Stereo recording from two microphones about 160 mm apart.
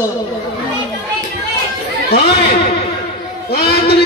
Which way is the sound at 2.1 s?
90° left.